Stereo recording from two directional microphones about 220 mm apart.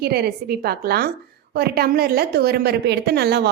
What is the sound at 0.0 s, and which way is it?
A woman's voice, 45° right (ahead or behind).